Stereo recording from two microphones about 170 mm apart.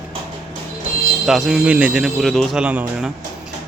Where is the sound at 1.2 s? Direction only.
Centre (ahead or behind).